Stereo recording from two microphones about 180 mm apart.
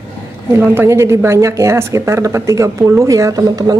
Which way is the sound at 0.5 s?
10° right (ahead or behind).